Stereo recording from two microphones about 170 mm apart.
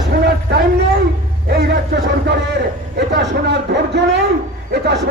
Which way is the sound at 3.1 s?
80° right.